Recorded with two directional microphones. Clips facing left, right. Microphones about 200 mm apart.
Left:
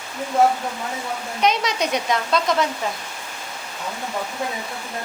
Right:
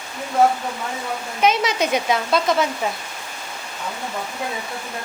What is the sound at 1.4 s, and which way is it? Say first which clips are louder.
Speech: right 2 dB; 5° right (ahead or behind).